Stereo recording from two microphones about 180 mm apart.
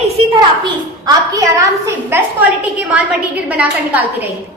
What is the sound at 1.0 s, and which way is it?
A woman's voice, 20° right (ahead or behind).